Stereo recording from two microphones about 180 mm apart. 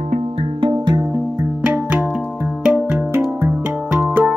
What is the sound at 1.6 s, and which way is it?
Music, 10° right (ahead or behind).